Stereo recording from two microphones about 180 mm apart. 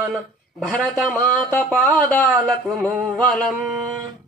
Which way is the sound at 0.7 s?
Centre (ahead or behind).